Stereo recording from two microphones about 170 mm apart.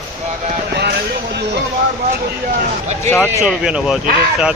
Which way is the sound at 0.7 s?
80° right.